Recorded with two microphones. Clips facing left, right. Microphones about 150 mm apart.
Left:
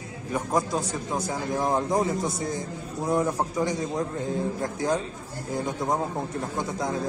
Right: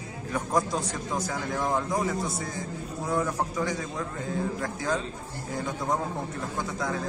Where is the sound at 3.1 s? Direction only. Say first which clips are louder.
Left 3 dB; 20° left (ahead or behind).